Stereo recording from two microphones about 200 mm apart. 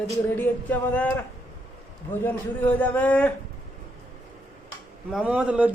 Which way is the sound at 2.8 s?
5° left (ahead or behind).